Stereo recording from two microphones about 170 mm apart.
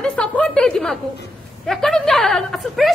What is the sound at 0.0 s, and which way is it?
A woman's voice, 5° left (ahead or behind).